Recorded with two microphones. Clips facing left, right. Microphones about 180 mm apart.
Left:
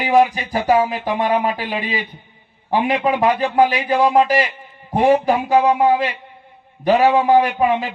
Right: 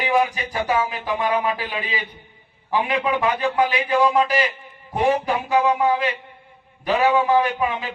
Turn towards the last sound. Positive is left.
turn(degrees=35)  # may be behind; listen again after turning